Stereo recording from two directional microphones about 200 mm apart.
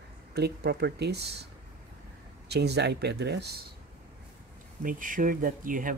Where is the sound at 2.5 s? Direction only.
55° right (ahead or behind).